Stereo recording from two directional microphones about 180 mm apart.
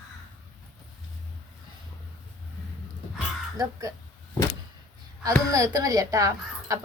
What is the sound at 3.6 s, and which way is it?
Speech, 15° right (ahead or behind).